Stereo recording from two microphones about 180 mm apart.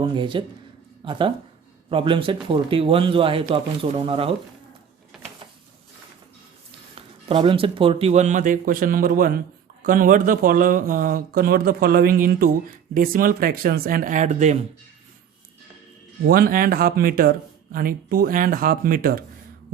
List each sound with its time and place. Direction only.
0.0 s speech: 25° right (ahead or behind)
6.7 s speech: 30° right (ahead or behind)
16.2 s speech: 55° right (ahead or behind)